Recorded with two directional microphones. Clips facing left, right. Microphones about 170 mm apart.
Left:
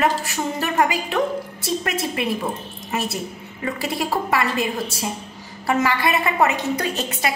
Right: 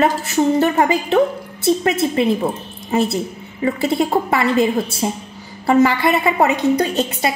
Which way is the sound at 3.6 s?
25° right (ahead or behind).